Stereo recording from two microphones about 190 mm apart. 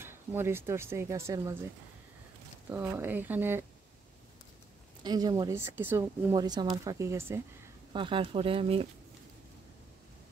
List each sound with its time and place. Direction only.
0.0 s speech: 10° right (ahead or behind)
2.7 s speech: 15° right (ahead or behind)
5.0 s speech: 20° right (ahead or behind)
7.9 s speech: 25° right (ahead or behind)